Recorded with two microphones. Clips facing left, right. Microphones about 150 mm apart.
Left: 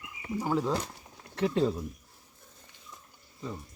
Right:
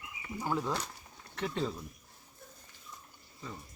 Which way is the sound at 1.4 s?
30° left (ahead or behind).